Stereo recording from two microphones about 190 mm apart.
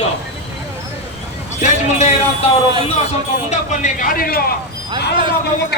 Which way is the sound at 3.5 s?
40° left (ahead or behind).